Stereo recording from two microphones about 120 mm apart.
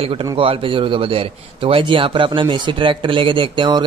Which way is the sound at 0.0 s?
50° right (ahead or behind).